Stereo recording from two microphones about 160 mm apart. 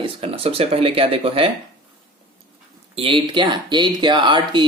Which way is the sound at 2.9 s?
35° right (ahead or behind).